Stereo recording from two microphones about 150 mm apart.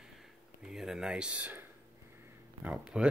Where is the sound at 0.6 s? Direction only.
5° right (ahead or behind).